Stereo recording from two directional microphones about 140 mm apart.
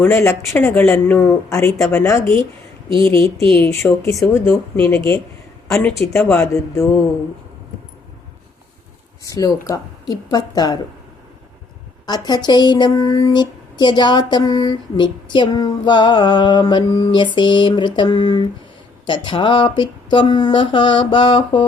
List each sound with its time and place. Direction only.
0.0 s speech: 15° left (ahead or behind)
3.5 s speech: 20° left (ahead or behind)
5.6 s a woman's voice: 5° left (ahead or behind)
5.9 s speech: 20° left (ahead or behind)
9.3 s speech: 25° left (ahead or behind)
12.0 s speech: 30° left (ahead or behind)